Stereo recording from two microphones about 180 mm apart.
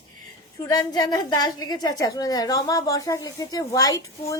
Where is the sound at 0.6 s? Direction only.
20° left (ahead or behind).